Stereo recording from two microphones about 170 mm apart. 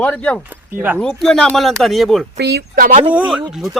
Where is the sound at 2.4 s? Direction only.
75° right (ahead or behind); by 3.0 s 55° right (ahead or behind).